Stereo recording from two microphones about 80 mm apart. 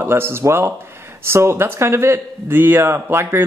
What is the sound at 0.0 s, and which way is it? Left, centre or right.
Speech, right.